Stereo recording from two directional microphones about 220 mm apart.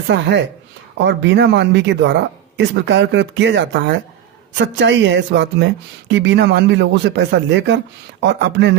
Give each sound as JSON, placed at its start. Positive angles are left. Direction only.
{"t": 0.1, "sound": "a woman's voice", "side_deg": -55}